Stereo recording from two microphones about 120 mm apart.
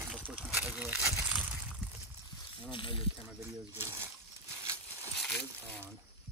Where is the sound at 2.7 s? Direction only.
45° left (ahead or behind).